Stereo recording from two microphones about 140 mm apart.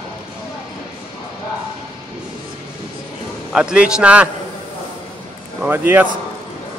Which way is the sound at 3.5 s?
5° right (ahead or behind).